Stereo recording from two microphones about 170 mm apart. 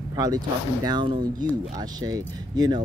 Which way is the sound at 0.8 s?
25° right (ahead or behind).